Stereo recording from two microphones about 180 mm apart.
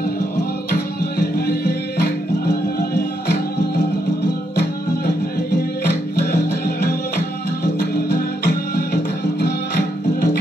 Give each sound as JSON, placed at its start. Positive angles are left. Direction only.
{"t": 1.2, "sound": "music", "side_deg": 60}
{"t": 5.9, "sound": "music", "side_deg": 50}